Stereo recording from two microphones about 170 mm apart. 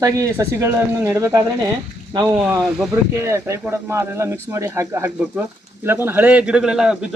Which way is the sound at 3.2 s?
15° right (ahead or behind).